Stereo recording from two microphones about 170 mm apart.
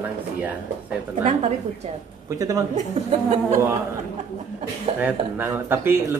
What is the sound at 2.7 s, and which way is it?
Speech, 40° right (ahead or behind).